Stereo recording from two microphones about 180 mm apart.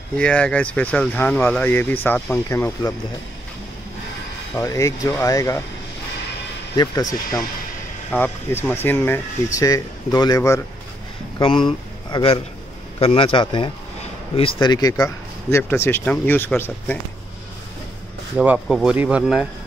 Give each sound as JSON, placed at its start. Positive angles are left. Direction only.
{"t": 0.1, "sound": "speech", "side_deg": 5}
{"t": 4.6, "sound": "speech", "side_deg": 15}
{"t": 6.8, "sound": "a man's voice", "side_deg": 20}
{"t": 18.4, "sound": "speech", "side_deg": -5}